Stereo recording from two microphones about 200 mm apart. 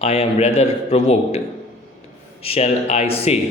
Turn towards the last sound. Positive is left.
turn(degrees=30)  # may be behind; listen again after turning